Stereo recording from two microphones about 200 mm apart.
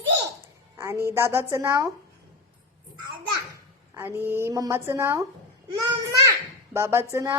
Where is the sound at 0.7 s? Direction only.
15° right (ahead or behind).